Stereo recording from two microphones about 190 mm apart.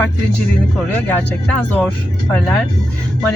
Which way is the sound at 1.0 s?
10° left (ahead or behind).